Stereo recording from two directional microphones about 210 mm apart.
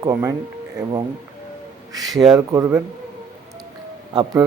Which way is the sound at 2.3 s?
15° right (ahead or behind).